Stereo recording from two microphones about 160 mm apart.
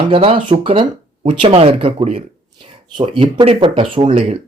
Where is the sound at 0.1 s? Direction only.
35° right (ahead or behind).